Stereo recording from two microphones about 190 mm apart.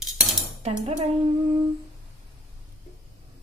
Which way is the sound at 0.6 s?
35° right (ahead or behind).